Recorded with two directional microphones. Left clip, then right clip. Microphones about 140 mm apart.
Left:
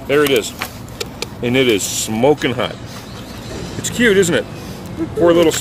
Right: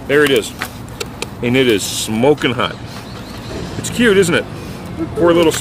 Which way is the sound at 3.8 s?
15° right (ahead or behind).